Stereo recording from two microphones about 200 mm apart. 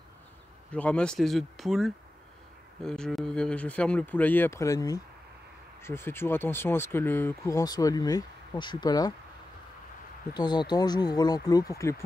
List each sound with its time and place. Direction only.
0.7 s speech: 5° left (ahead or behind)
10.3 s speech: 20° left (ahead or behind)